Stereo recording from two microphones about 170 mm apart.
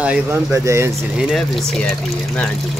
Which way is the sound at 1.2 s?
Centre (ahead or behind).